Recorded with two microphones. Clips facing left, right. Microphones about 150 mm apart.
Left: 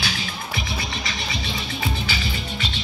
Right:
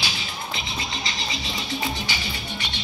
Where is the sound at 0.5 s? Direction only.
20° right (ahead or behind).